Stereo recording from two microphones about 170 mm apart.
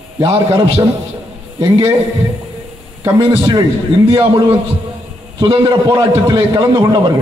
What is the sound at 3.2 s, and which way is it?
A man's voice, 25° right (ahead or behind).